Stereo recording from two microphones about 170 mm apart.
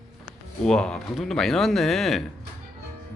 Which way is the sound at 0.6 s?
5° left (ahead or behind).